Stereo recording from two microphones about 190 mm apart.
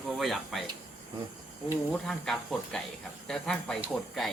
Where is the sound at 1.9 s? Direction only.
5° left (ahead or behind).